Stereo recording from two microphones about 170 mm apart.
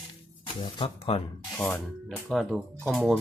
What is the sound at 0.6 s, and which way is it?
Speech, 30° left (ahead or behind).